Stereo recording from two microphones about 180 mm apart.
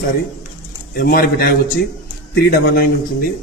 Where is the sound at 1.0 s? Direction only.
55° left (ahead or behind).